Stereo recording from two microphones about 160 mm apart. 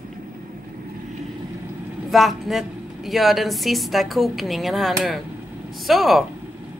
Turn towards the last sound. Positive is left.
turn(degrees=0)  # may be behind; listen again after turning